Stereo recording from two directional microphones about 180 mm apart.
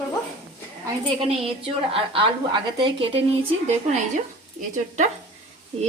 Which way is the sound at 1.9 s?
30° right (ahead or behind).